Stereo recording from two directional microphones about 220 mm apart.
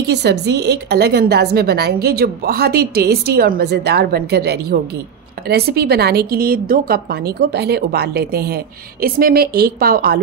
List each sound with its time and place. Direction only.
0.0 s a woman's voice: 50° right (ahead or behind)